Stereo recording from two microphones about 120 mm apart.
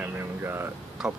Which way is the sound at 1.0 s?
5° right (ahead or behind).